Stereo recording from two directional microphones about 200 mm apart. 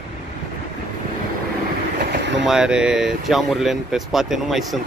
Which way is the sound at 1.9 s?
55° right (ahead or behind).